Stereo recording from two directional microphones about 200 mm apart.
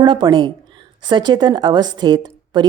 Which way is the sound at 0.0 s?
25° right (ahead or behind).